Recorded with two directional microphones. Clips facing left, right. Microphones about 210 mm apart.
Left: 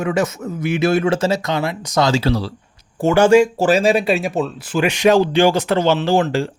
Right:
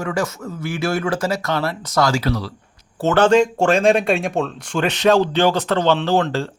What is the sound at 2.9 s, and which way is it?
Speech, 10° left (ahead or behind).